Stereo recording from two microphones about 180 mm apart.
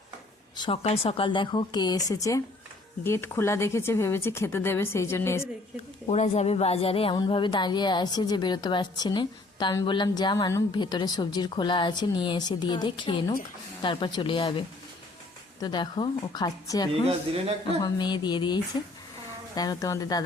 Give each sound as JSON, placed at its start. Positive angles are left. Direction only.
{"t": 0.5, "sound": "a sound", "side_deg": 25}
{"t": 0.8, "sound": "a woman's voice", "side_deg": 35}
{"t": 6.1, "sound": "a woman's voice", "side_deg": 40}
{"t": 15.6, "sound": "a woman's voice", "side_deg": 25}
{"t": 17.1, "sound": "a man's voice", "side_deg": -30}
{"t": 17.8, "sound": "a woman's voice", "side_deg": 25}